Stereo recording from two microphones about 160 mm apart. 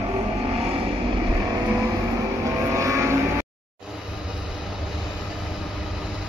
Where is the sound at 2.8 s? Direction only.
20° right (ahead or behind).